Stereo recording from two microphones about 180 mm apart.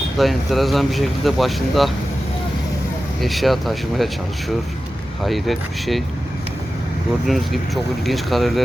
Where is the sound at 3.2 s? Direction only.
Centre (ahead or behind).